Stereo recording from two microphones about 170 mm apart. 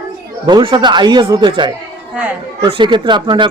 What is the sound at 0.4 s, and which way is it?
Speech, 25° right (ahead or behind).